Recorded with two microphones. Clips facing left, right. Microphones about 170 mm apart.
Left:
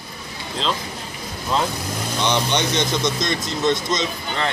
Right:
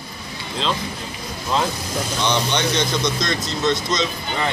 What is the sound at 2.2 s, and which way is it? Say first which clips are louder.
Speech: left 1 dB; 15° left (ahead or behind).